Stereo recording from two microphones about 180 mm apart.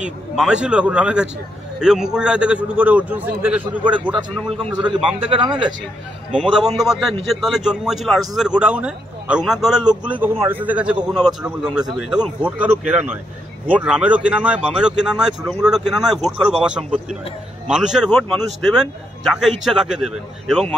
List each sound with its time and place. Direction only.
0.0 s a man's voice: 5° right (ahead or behind)
5.2 s speech: 30° right (ahead or behind)
6.4 s a man's voice: centre (ahead or behind)